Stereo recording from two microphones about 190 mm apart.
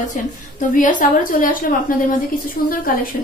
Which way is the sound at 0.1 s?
40° left (ahead or behind).